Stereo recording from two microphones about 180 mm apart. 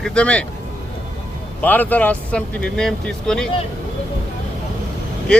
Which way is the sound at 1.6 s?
10° left (ahead or behind).